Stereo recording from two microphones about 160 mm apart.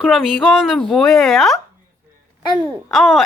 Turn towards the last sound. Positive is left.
turn(degrees=0)  # may be behind; listen again after turning